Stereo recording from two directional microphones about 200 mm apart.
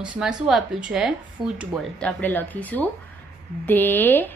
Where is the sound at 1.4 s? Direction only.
25° right (ahead or behind).